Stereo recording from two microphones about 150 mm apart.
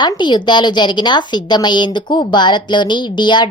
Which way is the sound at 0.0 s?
30° left (ahead or behind).